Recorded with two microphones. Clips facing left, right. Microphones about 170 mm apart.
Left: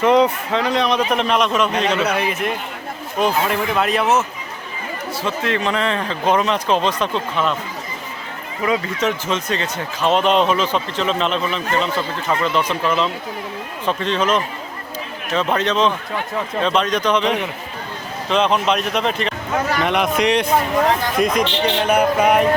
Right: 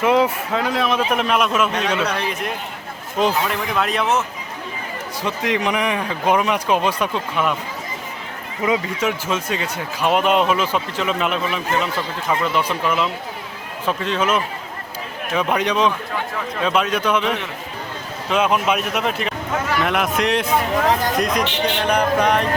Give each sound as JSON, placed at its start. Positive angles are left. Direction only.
{"t": 0.0, "sound": "a man's voice", "side_deg": -5}
{"t": 2.0, "sound": "a man's voice", "side_deg": 5}
{"t": 5.2, "sound": "speech", "side_deg": -15}
{"t": 8.6, "sound": "speech", "side_deg": -20}
{"t": 9.0, "sound": "a man's voice", "side_deg": -10}